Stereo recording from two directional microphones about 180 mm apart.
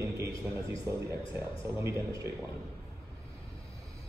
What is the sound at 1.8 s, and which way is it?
Speech, 15° right (ahead or behind).